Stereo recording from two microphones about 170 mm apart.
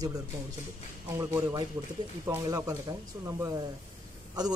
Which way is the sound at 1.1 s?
20° right (ahead or behind).